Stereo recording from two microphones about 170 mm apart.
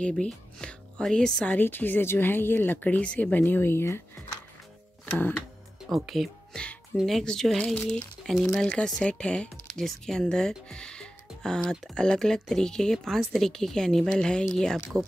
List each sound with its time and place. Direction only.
0.0 s a woman's voice: 5° left (ahead or behind)
5.1 s a woman's voice: 10° left (ahead or behind)